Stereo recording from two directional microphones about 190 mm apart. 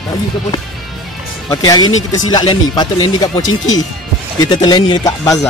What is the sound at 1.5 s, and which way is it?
Speech, 20° left (ahead or behind).